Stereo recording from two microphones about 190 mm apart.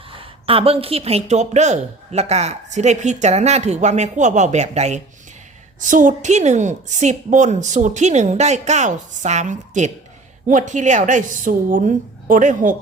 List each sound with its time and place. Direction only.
0.1 s speech: 30° right (ahead or behind)